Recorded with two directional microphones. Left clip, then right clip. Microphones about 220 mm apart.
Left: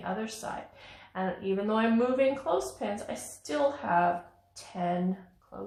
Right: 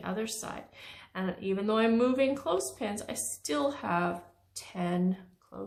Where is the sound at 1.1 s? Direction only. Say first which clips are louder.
Left 2 dB; 25° right (ahead or behind).